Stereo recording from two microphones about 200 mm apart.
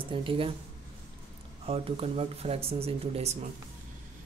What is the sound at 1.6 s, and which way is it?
Speech, 30° right (ahead or behind).